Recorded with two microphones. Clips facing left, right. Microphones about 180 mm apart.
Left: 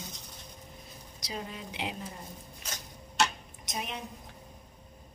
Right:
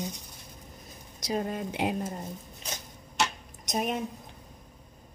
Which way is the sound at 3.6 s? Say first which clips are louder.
Right 9 dB; 45° right (ahead or behind).